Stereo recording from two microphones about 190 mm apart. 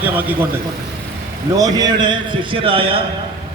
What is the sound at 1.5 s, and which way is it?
A man's voice, 20° right (ahead or behind).